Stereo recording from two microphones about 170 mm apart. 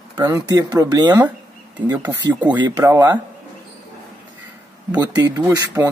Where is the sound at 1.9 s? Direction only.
10° right (ahead or behind).